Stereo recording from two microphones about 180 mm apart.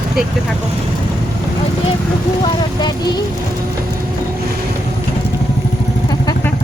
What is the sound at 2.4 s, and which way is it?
Speech, 25° left (ahead or behind).